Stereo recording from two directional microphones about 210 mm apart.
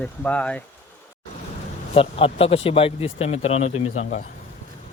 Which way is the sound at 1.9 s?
25° left (ahead or behind).